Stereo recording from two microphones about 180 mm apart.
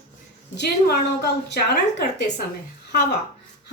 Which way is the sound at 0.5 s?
65° left (ahead or behind).